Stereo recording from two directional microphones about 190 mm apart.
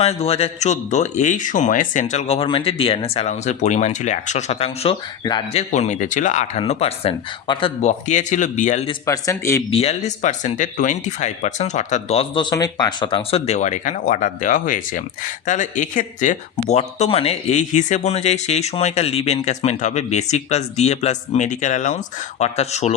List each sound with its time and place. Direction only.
0.0 s speech: 30° left (ahead or behind)
5.7 s speech: 40° left (ahead or behind)
8.9 s a man's voice: 15° left (ahead or behind)
9.6 s speech: 30° left (ahead or behind)